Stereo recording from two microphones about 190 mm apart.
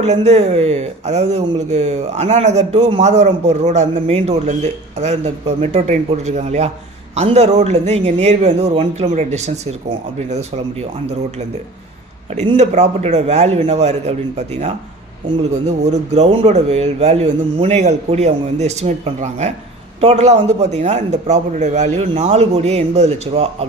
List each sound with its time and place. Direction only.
0.0 s speech: 35° right (ahead or behind)
12.4 s speech: 35° right (ahead or behind)